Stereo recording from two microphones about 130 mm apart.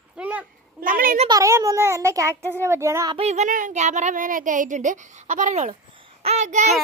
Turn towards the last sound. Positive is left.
turn(degrees=-65)  # may be behind; listen again after turning